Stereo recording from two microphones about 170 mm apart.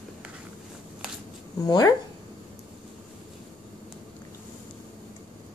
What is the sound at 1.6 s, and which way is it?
Speech, 25° left (ahead or behind).